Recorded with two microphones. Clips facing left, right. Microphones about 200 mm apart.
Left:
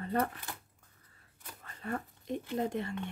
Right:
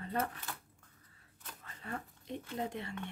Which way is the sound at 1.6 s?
45° left (ahead or behind).